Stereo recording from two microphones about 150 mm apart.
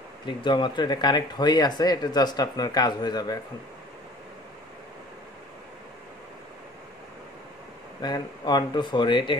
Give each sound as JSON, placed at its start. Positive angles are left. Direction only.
{"t": 0.3, "sound": "speech", "side_deg": 30}
{"t": 8.0, "sound": "speech", "side_deg": 30}